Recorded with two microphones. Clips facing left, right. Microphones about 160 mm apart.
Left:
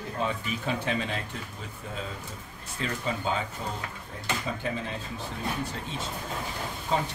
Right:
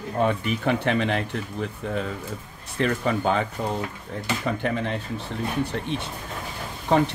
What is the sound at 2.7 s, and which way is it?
Speech, 65° right (ahead or behind).